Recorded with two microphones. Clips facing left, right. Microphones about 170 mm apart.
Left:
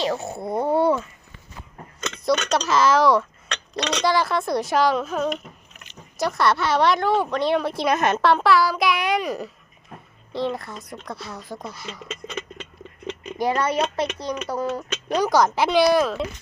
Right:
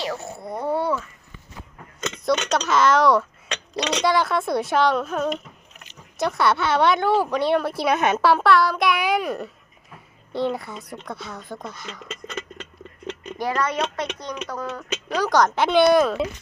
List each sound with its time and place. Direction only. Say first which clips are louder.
0.4 s speech: left 4 dB; 25° left (ahead or behind)
2.5 s a woman's voice: even; centre (ahead or behind)
13.1 s a sound: left 3 dB; 15° left (ahead or behind)
13.6 s speech: left 2 dB; 30° left (ahead or behind)
15.2 s a woman's voice: even; 5° left (ahead or behind)